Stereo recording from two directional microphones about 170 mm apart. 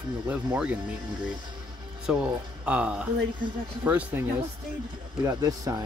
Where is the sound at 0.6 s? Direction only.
5° right (ahead or behind); by 5.9 s 20° right (ahead or behind).